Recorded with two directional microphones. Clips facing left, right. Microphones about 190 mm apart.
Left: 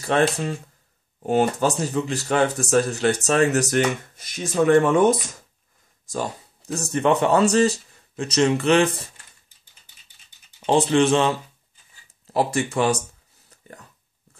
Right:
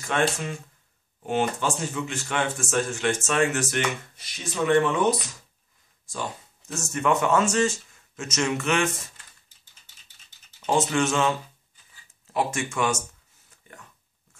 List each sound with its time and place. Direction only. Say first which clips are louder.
0.0 s speech: left 5 dB; 35° left (ahead or behind)
10.6 s speech: left 5 dB; 30° left (ahead or behind)